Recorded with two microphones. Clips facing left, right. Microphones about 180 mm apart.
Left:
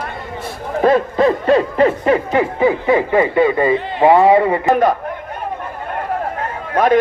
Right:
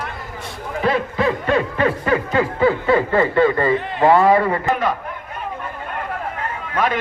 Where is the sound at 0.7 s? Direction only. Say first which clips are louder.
Left 6 dB; 45° left (ahead or behind); by 3.7 s 15° left (ahead or behind).